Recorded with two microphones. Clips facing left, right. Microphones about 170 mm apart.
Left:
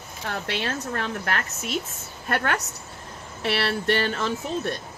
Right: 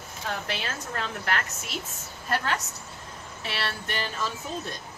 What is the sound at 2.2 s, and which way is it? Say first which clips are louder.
Speech: left 3 dB; 60° left (ahead or behind).